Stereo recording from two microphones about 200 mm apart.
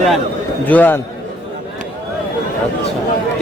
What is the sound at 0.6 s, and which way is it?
Speech, 10° left (ahead or behind).